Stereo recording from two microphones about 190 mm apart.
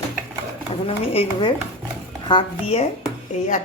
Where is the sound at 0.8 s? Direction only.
30° left (ahead or behind).